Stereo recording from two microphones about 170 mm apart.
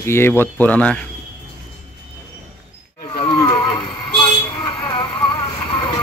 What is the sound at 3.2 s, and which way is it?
Vehicle, 25° left (ahead or behind).